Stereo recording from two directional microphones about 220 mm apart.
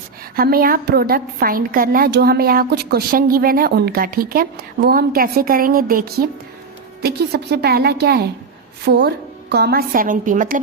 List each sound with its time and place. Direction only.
0.3 s a woman's voice: 40° right (ahead or behind)